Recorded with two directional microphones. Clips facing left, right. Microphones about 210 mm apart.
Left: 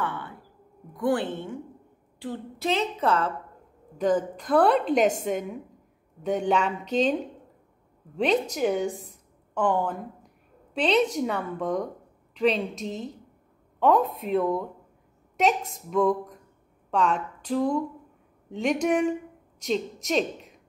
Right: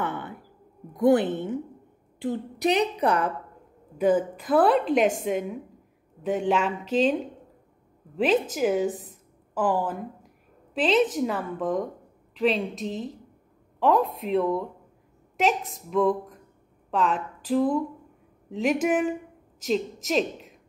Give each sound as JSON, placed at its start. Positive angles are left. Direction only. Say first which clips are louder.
{"t": 0.0, "sound": "a woman's voice", "louder": "right 2 dB", "side_deg": -20}
{"t": 8.2, "sound": "a woman's voice", "louder": "right 1 dB", "side_deg": -5}